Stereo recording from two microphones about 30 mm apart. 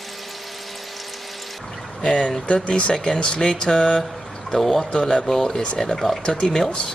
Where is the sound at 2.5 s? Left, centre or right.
Left.